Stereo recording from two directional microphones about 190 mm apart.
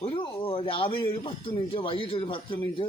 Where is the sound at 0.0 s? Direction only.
30° left (ahead or behind).